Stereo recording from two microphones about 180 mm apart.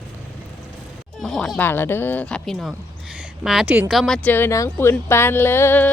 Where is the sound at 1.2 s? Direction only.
Centre (ahead or behind).